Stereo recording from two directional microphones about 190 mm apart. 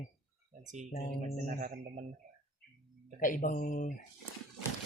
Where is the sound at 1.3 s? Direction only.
45° right (ahead or behind).